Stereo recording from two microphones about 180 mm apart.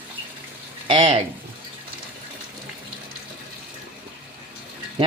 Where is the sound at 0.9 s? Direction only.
30° right (ahead or behind).